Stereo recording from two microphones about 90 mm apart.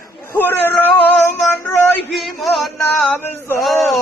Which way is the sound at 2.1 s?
Centre (ahead or behind).